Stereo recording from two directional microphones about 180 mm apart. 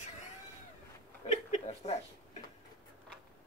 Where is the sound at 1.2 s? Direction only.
35° left (ahead or behind).